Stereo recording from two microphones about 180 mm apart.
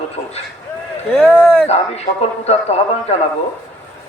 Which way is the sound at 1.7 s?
35° left (ahead or behind).